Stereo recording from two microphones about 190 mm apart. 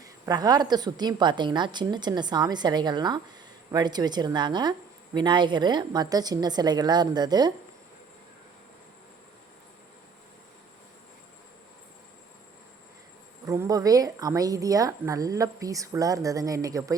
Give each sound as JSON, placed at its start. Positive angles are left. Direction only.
{"t": 0.0, "sound": "a woman's voice", "side_deg": -20}
{"t": 13.4, "sound": "a woman's voice", "side_deg": -20}